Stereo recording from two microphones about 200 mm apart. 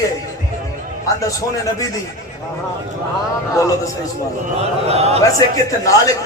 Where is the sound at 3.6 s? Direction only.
15° left (ahead or behind).